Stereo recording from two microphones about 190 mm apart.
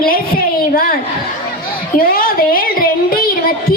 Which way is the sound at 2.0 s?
50° left (ahead or behind).